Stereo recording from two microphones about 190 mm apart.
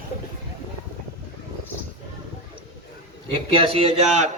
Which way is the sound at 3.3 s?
30° right (ahead or behind).